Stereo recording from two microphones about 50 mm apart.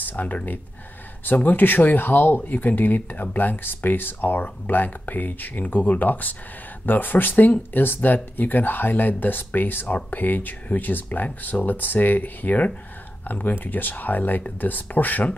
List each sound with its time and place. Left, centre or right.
0.0 s speech: left